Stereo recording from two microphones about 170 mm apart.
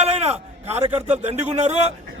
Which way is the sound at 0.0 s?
35° right (ahead or behind).